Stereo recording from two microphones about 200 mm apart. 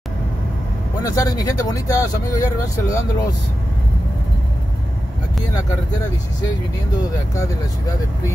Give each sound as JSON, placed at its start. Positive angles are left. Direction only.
{"t": 1.0, "sound": "speech", "side_deg": 15}